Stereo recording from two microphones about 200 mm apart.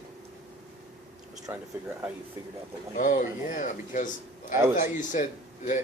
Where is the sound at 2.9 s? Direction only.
40° left (ahead or behind).